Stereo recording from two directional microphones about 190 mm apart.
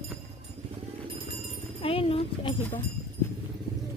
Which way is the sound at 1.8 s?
30° left (ahead or behind).